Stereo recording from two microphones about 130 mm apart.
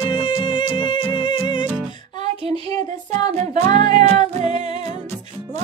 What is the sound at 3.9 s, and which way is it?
Music, 60° right (ahead or behind).